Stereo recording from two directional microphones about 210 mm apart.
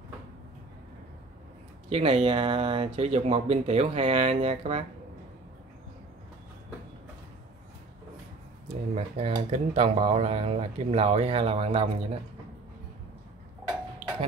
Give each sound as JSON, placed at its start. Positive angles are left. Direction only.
{"t": 1.9, "sound": "speech", "side_deg": -30}
{"t": 8.9, "sound": "speech", "side_deg": -30}